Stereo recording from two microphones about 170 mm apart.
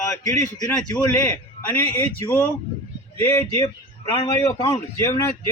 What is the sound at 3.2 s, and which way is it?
A man's voice, 15° left (ahead or behind).